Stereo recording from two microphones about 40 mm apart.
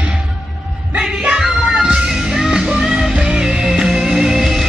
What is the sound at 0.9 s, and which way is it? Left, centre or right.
Music, right.